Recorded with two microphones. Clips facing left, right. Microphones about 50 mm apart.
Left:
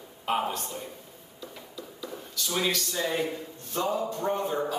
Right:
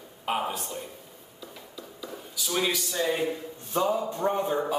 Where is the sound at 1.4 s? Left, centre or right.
Centre.